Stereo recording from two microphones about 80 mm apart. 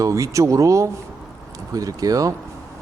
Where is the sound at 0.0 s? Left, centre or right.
Right.